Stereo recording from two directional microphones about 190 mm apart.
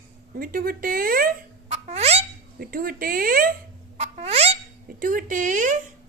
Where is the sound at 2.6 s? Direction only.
50° right (ahead or behind).